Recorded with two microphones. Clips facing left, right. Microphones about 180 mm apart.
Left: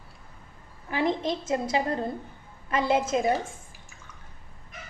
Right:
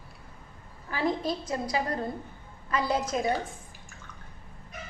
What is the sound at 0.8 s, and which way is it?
A woman's voice, 20° left (ahead or behind).